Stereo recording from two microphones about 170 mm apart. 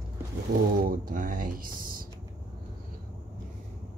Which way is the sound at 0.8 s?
55° right (ahead or behind).